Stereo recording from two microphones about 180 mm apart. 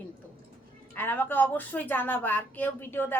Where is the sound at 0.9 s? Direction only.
10° left (ahead or behind).